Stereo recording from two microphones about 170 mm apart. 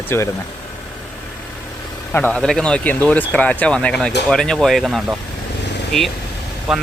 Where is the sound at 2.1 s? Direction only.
10° left (ahead or behind).